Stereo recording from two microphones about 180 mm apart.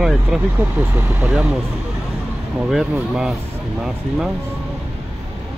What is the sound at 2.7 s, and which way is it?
Speech, centre (ahead or behind).